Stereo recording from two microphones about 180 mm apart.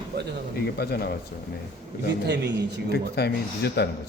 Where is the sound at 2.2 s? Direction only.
70° right (ahead or behind).